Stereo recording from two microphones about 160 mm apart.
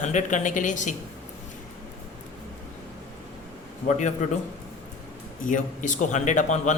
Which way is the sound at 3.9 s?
50° left (ahead or behind).